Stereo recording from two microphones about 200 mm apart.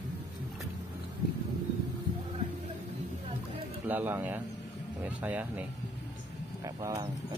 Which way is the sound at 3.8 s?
10° right (ahead or behind).